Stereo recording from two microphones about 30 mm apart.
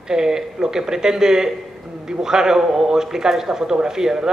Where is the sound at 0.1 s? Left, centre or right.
Right.